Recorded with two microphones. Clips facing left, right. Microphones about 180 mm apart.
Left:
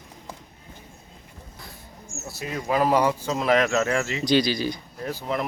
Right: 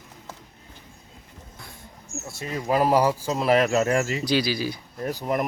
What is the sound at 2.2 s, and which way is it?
Speech, 5° left (ahead or behind).